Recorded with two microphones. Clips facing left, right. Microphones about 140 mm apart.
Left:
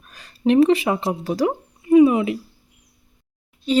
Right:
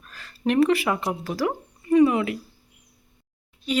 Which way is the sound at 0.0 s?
20° left (ahead or behind).